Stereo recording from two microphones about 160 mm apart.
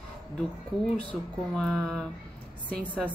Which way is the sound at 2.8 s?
10° right (ahead or behind).